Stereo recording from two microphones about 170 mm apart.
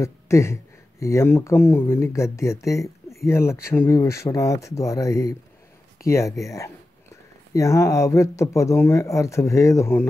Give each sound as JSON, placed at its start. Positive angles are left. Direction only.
{"t": 0.0, "sound": "speech", "side_deg": 15}